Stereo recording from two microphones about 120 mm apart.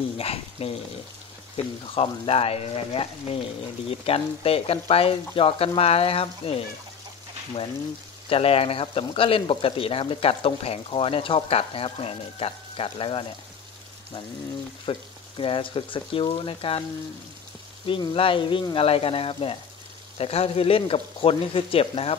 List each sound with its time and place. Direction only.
0.2 s speech: 55° left (ahead or behind)
2.0 s speech: 55° left (ahead or behind)
8.3 s speech: 55° left (ahead or behind)
14.9 s speech: 45° left (ahead or behind)
17.8 s speech: 45° left (ahead or behind)